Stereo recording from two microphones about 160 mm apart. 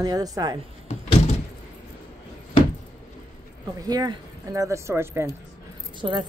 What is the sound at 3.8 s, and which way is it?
Speech, 25° right (ahead or behind).